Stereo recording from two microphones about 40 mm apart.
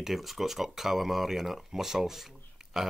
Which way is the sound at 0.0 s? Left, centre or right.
Centre.